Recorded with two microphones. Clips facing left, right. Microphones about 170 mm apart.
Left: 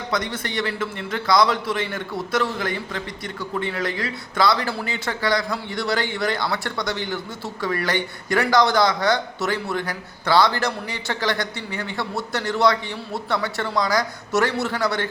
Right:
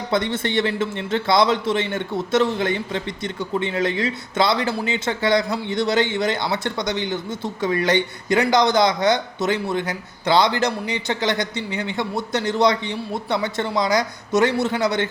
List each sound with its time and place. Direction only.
0.1 s speech: 25° right (ahead or behind)